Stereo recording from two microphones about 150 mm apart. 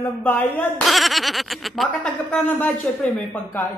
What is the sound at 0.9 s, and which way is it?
A woman's voice, centre (ahead or behind).